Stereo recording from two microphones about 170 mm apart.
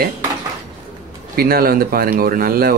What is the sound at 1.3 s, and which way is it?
Speech, 60° right (ahead or behind).